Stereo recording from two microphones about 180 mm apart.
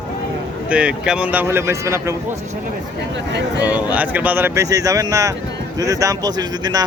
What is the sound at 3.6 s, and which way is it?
Speech, 10° right (ahead or behind).